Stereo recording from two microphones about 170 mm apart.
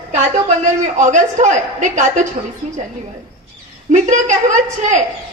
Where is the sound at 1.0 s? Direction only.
45° right (ahead or behind).